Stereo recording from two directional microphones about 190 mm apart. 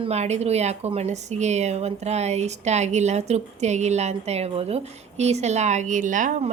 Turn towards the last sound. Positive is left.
turn(degrees=-40)  # may be behind; listen again after turning